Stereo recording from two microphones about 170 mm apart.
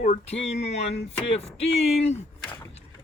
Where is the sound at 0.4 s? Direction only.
40° left (ahead or behind).